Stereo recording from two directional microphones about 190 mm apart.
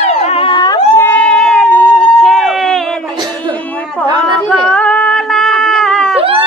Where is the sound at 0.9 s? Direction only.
10° left (ahead or behind).